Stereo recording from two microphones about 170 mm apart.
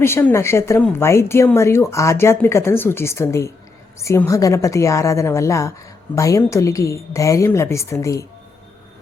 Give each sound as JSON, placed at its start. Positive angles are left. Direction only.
{"t": 0.0, "sound": "speech", "side_deg": 15}